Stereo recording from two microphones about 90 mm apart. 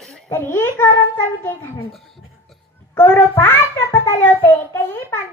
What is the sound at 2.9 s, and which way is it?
A child's voice, 25° left (ahead or behind).